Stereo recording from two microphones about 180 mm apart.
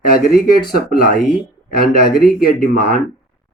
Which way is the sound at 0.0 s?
55° left (ahead or behind).